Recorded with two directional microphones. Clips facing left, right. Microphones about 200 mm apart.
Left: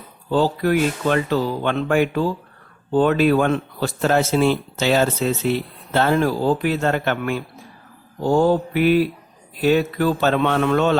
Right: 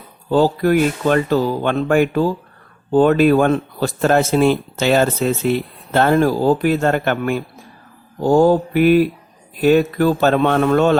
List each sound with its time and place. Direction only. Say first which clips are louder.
0.3 s speech: right 4 dB; 45° right (ahead or behind)